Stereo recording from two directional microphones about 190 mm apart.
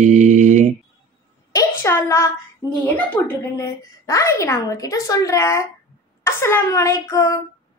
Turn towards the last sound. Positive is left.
turn(degrees=15)  # may be behind; listen again after turning